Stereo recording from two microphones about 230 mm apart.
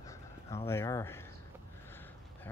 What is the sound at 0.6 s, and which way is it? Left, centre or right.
Speech, centre.